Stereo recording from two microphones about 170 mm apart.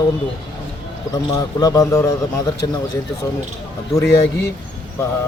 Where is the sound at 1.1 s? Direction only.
20° left (ahead or behind).